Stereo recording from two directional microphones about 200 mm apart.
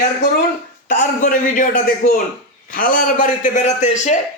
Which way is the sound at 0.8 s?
40° left (ahead or behind).